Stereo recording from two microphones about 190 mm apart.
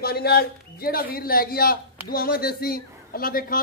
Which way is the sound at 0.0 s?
55° left (ahead or behind).